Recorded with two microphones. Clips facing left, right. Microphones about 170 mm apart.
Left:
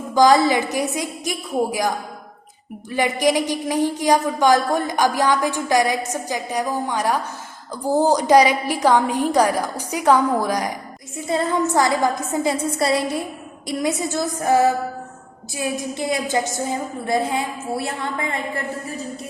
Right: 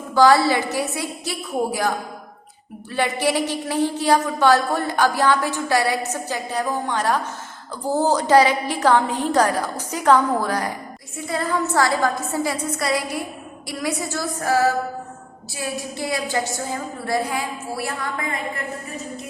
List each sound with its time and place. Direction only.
0.1 s speech: 15° left (ahead or behind)
2.9 s a woman's voice: 15° left (ahead or behind)